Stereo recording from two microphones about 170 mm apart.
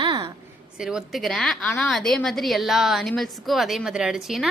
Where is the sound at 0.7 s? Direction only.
5° right (ahead or behind).